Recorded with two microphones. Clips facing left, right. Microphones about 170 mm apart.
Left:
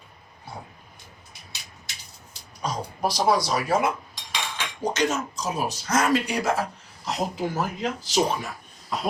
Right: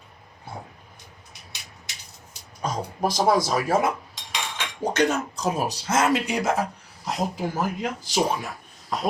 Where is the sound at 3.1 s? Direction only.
50° right (ahead or behind).